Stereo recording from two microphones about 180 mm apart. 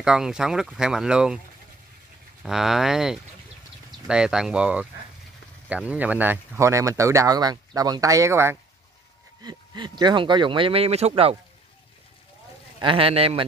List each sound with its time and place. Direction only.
0.0 s speech: 5° right (ahead or behind)
2.4 s speech: centre (ahead or behind); by 11.3 s 35° right (ahead or behind)
12.8 s a man's voice: 30° right (ahead or behind)